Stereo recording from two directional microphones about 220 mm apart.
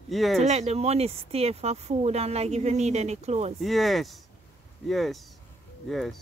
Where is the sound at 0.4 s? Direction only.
30° right (ahead or behind).